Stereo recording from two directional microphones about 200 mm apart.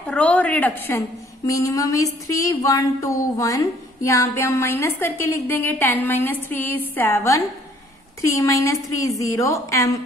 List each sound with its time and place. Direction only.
0.0 s a woman's voice: 5° left (ahead or behind)